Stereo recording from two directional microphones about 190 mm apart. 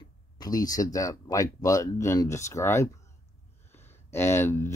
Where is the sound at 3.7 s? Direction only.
10° left (ahead or behind).